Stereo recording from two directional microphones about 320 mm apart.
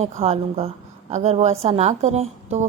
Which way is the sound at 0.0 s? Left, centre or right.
Centre.